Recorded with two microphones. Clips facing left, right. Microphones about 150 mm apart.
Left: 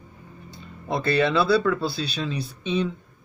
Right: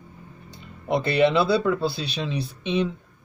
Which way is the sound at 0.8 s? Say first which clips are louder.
Right 2 dB; 20° right (ahead or behind).